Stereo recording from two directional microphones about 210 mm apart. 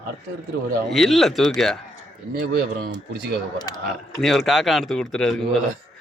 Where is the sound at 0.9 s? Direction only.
Centre (ahead or behind).